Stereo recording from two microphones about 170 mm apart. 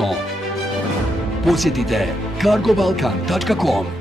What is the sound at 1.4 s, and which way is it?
Speech, centre (ahead or behind).